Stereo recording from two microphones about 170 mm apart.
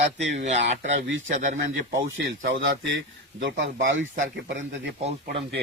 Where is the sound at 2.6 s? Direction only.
90° right.